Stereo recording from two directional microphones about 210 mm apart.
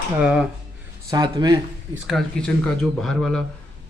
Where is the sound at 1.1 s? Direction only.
20° right (ahead or behind).